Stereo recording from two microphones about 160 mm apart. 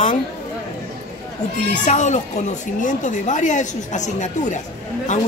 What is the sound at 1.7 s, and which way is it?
Speech, 50° left (ahead or behind).